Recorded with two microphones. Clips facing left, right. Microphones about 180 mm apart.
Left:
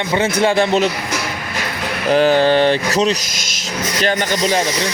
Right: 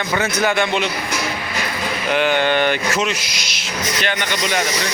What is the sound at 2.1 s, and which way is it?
Speech, 35° left (ahead or behind).